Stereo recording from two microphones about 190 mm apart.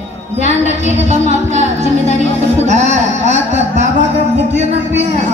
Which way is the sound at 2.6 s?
35° right (ahead or behind).